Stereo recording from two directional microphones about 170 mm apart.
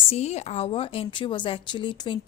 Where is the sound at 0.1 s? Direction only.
40° left (ahead or behind).